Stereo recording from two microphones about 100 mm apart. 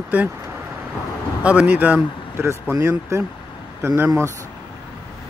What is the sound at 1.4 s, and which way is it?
Speech, 10° right (ahead or behind).